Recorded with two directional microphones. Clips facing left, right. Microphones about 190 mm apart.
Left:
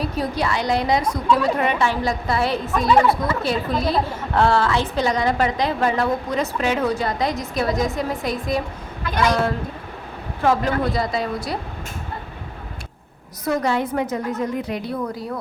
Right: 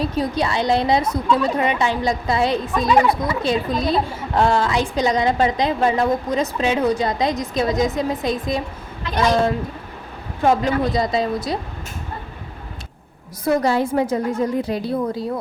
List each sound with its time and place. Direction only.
0.2 s a woman's voice: 25° right (ahead or behind)
13.4 s a woman's voice: 35° right (ahead or behind)